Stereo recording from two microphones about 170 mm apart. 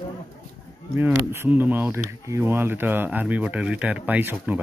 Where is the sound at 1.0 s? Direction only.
10° right (ahead or behind).